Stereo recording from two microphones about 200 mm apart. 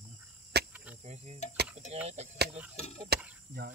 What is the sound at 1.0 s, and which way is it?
Cricket, 35° right (ahead or behind).